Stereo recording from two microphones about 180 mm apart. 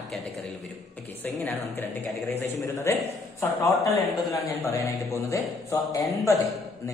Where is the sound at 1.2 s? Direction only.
10° left (ahead or behind).